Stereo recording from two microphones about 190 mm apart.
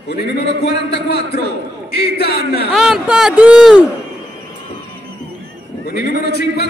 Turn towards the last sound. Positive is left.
turn(degrees=60)  # may be behind; listen again after turning